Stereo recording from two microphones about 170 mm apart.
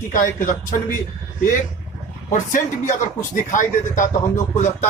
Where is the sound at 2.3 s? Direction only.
45° left (ahead or behind).